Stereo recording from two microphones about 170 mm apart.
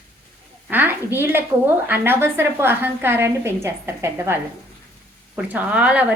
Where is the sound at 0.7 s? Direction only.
10° right (ahead or behind).